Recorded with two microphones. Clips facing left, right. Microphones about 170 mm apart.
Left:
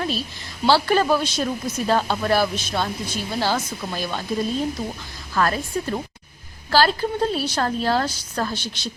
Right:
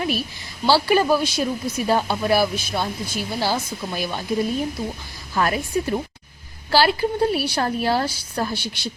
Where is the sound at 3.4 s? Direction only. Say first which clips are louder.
Left 1 dB; 15° right (ahead or behind).